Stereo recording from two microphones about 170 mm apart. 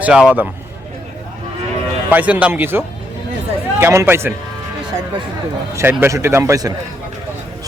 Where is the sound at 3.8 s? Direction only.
15° right (ahead or behind).